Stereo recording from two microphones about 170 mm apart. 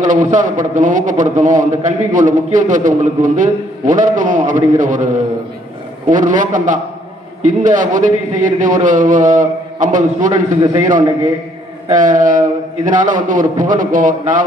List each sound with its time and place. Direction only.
0.0 s a man's voice: 45° right (ahead or behind)
11.9 s a man's voice: 50° right (ahead or behind)